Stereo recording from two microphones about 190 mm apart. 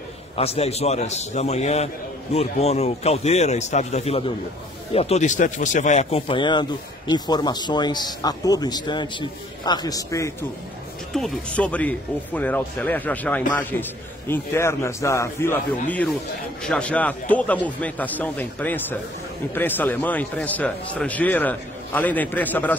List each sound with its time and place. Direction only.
0.4 s a man's voice: 35° left (ahead or behind); by 10.3 s 15° left (ahead or behind)
11.1 s a man's voice: 5° left (ahead or behind)
16.6 s a man's voice: 5° left (ahead or behind)